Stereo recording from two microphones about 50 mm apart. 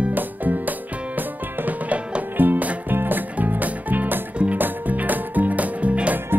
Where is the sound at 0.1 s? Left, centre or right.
Right.